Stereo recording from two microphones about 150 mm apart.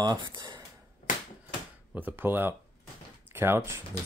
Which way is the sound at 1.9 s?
15° right (ahead or behind).